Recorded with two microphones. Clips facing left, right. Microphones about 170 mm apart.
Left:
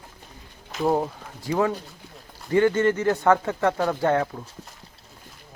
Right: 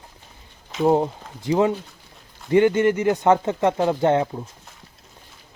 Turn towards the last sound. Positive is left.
turn(degrees=-20)  # may be behind; listen again after turning